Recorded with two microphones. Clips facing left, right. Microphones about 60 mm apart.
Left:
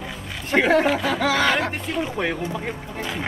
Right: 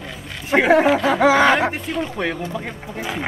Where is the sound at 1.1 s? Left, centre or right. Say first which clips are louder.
Right 6 dB; right.